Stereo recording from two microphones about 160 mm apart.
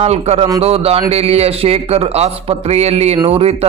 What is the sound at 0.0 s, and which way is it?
A man's voice, 40° right (ahead or behind).